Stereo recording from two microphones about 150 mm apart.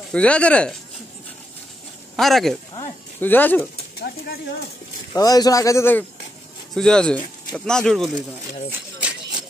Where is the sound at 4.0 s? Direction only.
90° left.